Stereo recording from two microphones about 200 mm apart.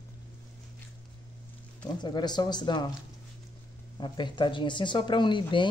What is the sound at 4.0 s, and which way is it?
Speech, 25° left (ahead or behind).